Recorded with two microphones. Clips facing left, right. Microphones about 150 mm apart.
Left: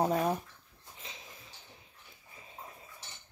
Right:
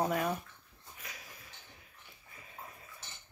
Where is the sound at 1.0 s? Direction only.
25° left (ahead or behind).